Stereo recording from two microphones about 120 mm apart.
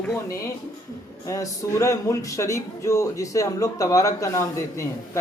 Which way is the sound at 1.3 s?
25° left (ahead or behind).